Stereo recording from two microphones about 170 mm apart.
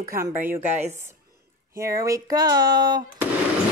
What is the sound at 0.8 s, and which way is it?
Speech, 40° right (ahead or behind).